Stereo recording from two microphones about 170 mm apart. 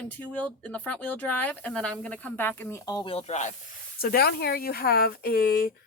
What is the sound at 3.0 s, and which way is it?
Speech, 35° left (ahead or behind).